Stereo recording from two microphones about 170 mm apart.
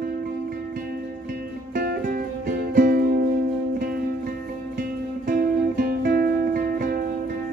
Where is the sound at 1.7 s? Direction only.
60° right (ahead or behind).